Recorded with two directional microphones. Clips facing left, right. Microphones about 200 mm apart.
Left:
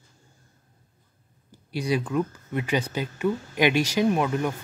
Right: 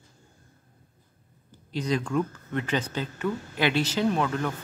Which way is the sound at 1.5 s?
10° left (ahead or behind).